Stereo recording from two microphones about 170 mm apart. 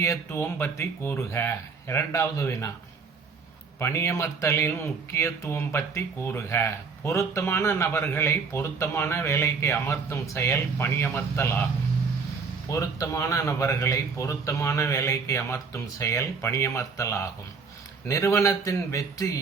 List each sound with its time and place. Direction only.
0.0 s speech: 15° left (ahead or behind)
3.8 s speech: 15° left (ahead or behind)
12.6 s speech: 20° left (ahead or behind)